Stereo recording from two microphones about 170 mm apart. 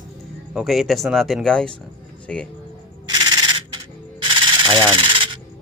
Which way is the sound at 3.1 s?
30° right (ahead or behind).